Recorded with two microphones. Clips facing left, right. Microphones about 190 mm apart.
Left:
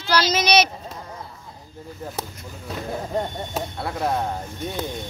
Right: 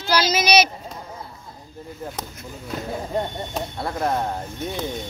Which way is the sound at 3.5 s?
5° left (ahead or behind).